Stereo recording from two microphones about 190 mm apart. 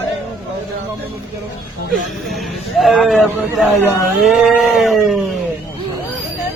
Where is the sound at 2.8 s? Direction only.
Centre (ahead or behind).